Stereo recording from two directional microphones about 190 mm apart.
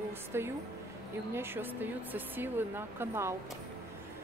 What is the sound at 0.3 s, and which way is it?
Speech, 10° right (ahead or behind).